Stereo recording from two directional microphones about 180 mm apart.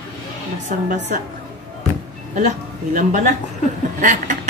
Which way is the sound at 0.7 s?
40° right (ahead or behind).